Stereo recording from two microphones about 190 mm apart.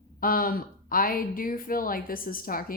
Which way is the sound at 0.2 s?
50° left (ahead or behind).